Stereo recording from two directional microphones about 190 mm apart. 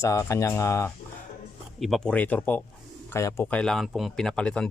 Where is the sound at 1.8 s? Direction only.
Centre (ahead or behind).